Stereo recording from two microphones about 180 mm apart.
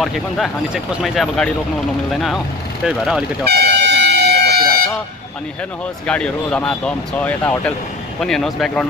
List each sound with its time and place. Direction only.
0.0 s speech: centre (ahead or behind)
3.4 s air horn: 65° right (ahead or behind)
6.0 s speech: 5° left (ahead or behind)